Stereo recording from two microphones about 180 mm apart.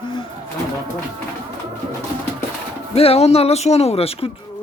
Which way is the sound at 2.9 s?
35° left (ahead or behind).